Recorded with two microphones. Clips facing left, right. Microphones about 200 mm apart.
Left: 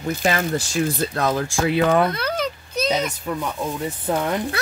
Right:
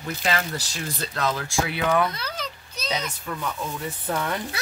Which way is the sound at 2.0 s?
55° left (ahead or behind).